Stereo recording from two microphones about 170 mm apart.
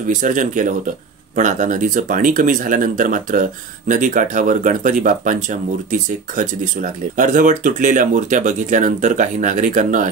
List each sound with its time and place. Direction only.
0.0 s speech: 50° right (ahead or behind)